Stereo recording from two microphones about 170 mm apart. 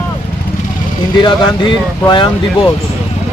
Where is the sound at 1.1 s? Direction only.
25° left (ahead or behind).